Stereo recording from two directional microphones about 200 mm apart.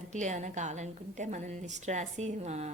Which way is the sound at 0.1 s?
35° right (ahead or behind).